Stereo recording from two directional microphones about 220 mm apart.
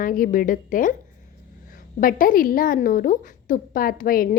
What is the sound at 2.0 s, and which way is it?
A woman's voice, 40° left (ahead or behind).